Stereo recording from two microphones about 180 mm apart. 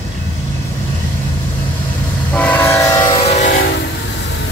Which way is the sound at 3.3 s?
40° left (ahead or behind).